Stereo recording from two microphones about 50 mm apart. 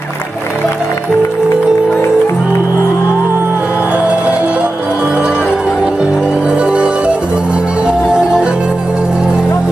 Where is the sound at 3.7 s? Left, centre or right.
Right.